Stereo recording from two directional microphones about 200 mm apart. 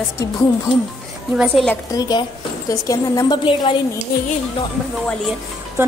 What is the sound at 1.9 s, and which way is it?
A woman's voice, 20° left (ahead or behind).